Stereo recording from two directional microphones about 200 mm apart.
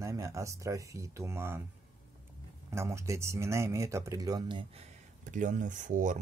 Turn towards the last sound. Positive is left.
turn(degrees=-40)  # may be behind; listen again after turning